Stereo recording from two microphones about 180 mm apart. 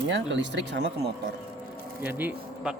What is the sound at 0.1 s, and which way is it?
Speech, 85° right.